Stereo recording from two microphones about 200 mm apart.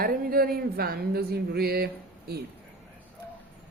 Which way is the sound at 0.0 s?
45° right (ahead or behind).